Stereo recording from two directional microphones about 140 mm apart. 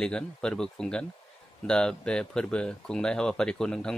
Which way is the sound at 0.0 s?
5° left (ahead or behind).